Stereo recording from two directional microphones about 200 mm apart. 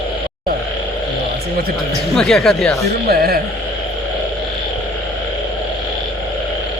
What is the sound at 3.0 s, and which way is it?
Speech, 50° right (ahead or behind).